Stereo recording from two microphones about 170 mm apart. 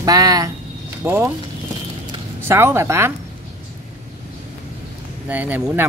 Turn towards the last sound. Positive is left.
turn(degrees=-10)  # may be behind; listen again after turning